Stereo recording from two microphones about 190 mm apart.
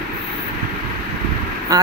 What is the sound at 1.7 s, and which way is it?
Speech, 20° right (ahead or behind).